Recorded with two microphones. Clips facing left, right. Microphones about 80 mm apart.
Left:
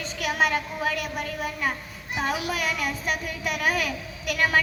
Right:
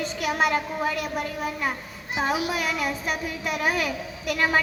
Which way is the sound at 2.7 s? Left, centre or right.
Centre.